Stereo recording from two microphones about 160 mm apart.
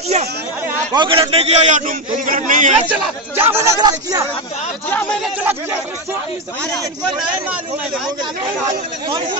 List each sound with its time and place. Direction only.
0.9 s a man's voice: 30° right (ahead or behind)
1.3 s a man's voice: 40° right (ahead or behind)
2.9 s speech: 15° right (ahead or behind)
5.2 s speech: 10° right (ahead or behind)